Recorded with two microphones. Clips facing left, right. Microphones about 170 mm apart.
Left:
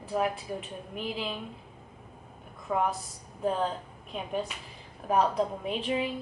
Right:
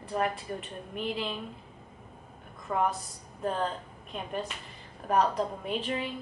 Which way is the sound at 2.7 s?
5° left (ahead or behind).